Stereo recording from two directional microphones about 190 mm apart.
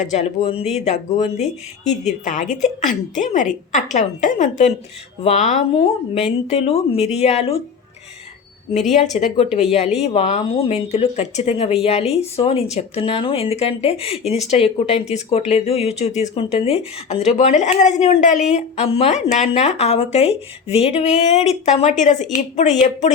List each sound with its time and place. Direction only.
0.0 s speech: 35° left (ahead or behind)
9.1 s speech: 35° left (ahead or behind)